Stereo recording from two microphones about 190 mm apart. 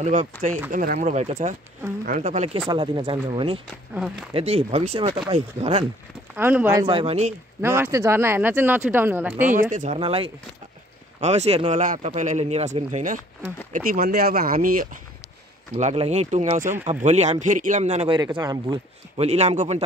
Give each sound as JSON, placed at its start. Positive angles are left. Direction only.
{"t": 0.0, "sound": "speech", "side_deg": -40}
{"t": 3.9, "sound": "speech", "side_deg": -5}
{"t": 4.3, "sound": "speech", "side_deg": -30}
{"t": 6.3, "sound": "speech", "side_deg": -10}
{"t": 6.9, "sound": "speech", "side_deg": -30}
{"t": 7.6, "sound": "speech", "side_deg": -15}
{"t": 9.5, "sound": "speech", "side_deg": -40}
{"t": 9.9, "sound": "speech", "side_deg": -30}
{"t": 15.8, "sound": "speech", "side_deg": -35}
{"t": 18.3, "sound": "speech", "side_deg": -20}
{"t": 19.1, "sound": "speech", "side_deg": -35}